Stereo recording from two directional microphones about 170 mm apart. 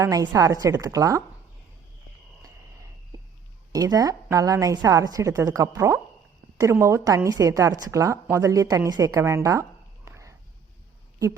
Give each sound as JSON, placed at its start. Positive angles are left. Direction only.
{"t": 0.0, "sound": "a woman's voice", "side_deg": -20}
{"t": 3.7, "sound": "a woman's voice", "side_deg": -20}